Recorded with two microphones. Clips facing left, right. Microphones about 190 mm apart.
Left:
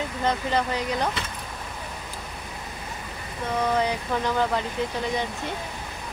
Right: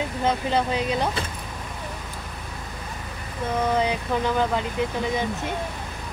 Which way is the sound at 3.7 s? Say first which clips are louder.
Right 1 dB; 15° right (ahead or behind).